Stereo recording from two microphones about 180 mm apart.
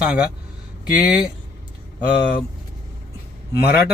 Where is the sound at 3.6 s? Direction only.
60° left (ahead or behind).